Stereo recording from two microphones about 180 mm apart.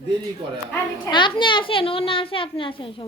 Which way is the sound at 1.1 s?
25° left (ahead or behind).